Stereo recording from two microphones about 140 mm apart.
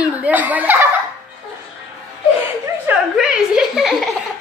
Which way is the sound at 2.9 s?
5° right (ahead or behind).